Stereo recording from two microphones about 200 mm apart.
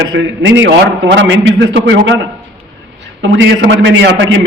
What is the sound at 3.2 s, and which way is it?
A man's voice, 70° right (ahead or behind).